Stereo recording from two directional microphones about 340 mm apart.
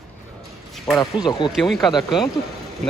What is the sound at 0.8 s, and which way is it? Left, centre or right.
Speech, centre.